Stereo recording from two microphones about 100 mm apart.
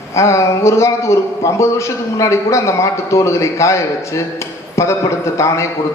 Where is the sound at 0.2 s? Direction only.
30° left (ahead or behind).